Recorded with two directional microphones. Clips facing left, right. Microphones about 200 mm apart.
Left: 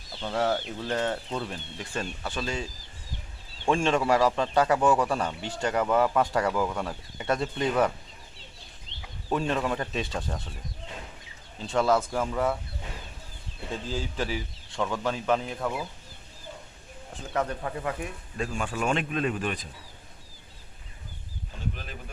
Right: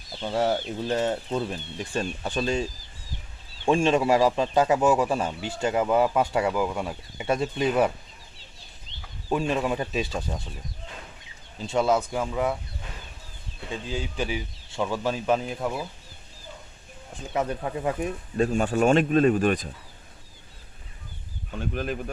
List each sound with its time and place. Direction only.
0.2 s speech: 15° right (ahead or behind)
3.7 s speech: 20° right (ahead or behind)
6.5 s speech: 5° right (ahead or behind)
9.3 s speech: 5° right (ahead or behind)
10.0 s speech: centre (ahead or behind)
11.7 s speech: 20° right (ahead or behind)
13.7 s speech: centre (ahead or behind)
17.3 s speech: 15° right (ahead or behind)
18.3 s speech: 40° right (ahead or behind)
21.6 s speech: 55° right (ahead or behind)